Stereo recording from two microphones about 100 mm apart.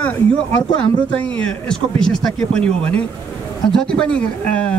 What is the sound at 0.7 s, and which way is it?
A man's voice, 10° left (ahead or behind).